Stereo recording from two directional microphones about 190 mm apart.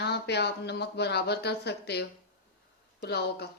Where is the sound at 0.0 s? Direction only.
60° left (ahead or behind).